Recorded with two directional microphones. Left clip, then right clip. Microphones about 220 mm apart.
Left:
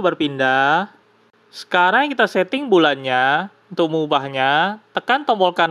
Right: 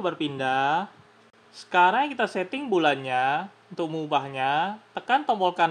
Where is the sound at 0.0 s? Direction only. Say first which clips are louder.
Left 9 dB; 35° left (ahead or behind).